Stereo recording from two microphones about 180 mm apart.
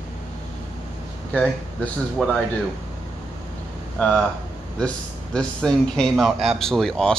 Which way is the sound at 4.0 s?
5° left (ahead or behind).